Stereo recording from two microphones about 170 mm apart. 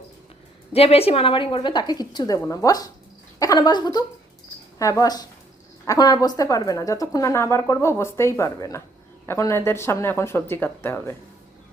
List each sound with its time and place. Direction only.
0.7 s a woman's voice: 35° left (ahead or behind); by 11.2 s 15° left (ahead or behind)